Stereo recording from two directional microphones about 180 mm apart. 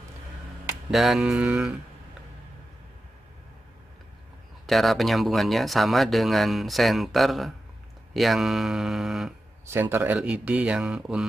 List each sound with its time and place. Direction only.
0.8 s speech: centre (ahead or behind)
4.6 s speech: centre (ahead or behind)
9.7 s speech: 10° right (ahead or behind)